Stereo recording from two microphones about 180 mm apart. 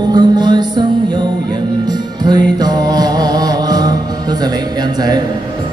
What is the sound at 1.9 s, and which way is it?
Music, 25° right (ahead or behind).